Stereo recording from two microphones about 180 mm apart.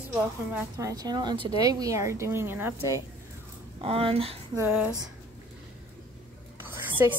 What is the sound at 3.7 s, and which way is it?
Speech, 30° right (ahead or behind).